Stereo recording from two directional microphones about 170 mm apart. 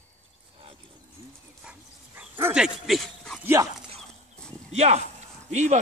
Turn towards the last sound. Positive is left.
turn(degrees=-40)  # may be behind; listen again after turning